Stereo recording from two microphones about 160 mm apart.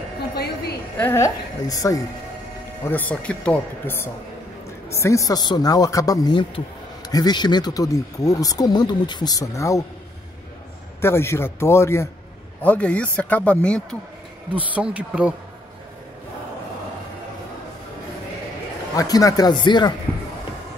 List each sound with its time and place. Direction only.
0.9 s speech: 15° left (ahead or behind)
2.8 s speech: 10° left (ahead or behind)
11.0 s speech: 15° left (ahead or behind)
14.5 s speech: 10° right (ahead or behind)
18.9 s speech: 20° left (ahead or behind)